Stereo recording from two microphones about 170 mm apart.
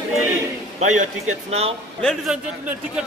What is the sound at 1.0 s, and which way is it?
Speech, 40° right (ahead or behind).